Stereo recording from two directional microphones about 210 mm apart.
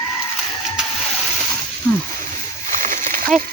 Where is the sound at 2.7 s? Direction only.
40° right (ahead or behind).